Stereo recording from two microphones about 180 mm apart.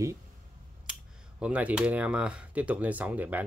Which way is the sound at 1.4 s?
10° right (ahead or behind).